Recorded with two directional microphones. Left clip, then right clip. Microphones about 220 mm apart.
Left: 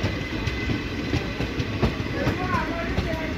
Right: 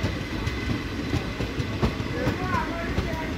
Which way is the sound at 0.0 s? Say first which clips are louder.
Left 2 dB; 55° right (ahead or behind).